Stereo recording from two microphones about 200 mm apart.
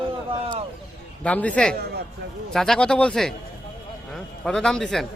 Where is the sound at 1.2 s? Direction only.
5° left (ahead or behind).